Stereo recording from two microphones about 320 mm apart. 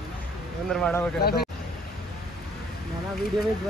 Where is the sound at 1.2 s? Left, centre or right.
Left.